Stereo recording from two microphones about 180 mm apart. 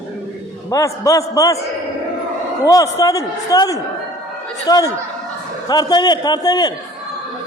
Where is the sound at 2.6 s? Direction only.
20° left (ahead or behind).